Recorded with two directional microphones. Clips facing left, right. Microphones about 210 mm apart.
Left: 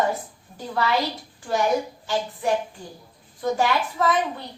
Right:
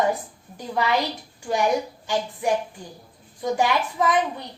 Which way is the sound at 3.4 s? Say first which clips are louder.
Even; 15° right (ahead or behind).